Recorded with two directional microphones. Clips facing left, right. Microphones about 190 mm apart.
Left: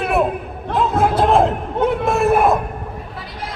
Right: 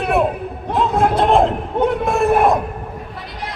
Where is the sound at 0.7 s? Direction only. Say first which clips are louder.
Even; centre (ahead or behind).